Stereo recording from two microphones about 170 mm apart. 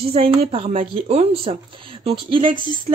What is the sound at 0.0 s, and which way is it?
Speech, 35° right (ahead or behind).